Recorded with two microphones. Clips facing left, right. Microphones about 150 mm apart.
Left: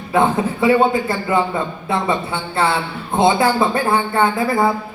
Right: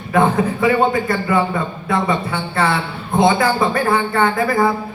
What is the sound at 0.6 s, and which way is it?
Speech, 25° left (ahead or behind).